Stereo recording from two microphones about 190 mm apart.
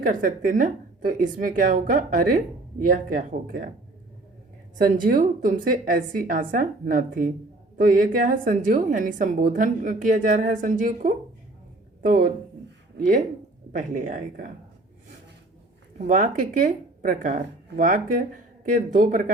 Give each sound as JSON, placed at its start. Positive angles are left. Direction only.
{"t": 0.0, "sound": "a woman's voice", "side_deg": -45}
{"t": 4.9, "sound": "a woman's voice", "side_deg": -50}
{"t": 13.7, "sound": "a woman's voice", "side_deg": -45}
{"t": 16.0, "sound": "speech", "side_deg": -40}